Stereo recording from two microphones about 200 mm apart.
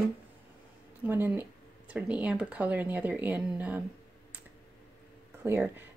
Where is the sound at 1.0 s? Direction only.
10° right (ahead or behind).